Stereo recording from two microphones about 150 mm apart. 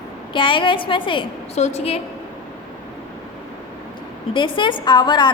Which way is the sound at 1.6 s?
45° left (ahead or behind).